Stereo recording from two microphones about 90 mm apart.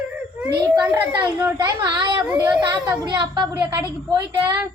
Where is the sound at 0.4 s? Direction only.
40° right (ahead or behind).